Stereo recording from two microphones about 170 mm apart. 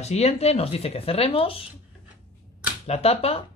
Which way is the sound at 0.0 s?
40° left (ahead or behind).